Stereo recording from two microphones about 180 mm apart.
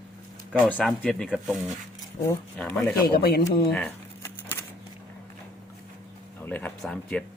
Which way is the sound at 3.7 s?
10° left (ahead or behind).